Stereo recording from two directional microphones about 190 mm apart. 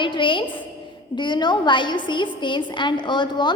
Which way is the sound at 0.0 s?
25° left (ahead or behind).